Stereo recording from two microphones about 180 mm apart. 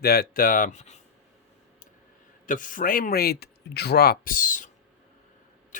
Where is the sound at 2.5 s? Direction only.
45° left (ahead or behind).